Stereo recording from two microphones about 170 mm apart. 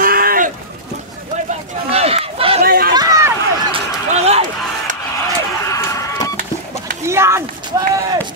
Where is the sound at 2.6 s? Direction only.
60° right (ahead or behind).